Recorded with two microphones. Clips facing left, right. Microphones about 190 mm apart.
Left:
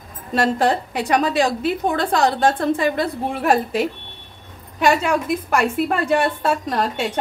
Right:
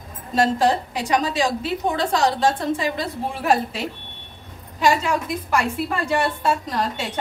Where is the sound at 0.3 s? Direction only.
60° left (ahead or behind).